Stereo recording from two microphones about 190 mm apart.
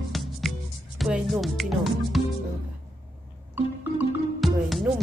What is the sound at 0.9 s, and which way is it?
Speech, centre (ahead or behind).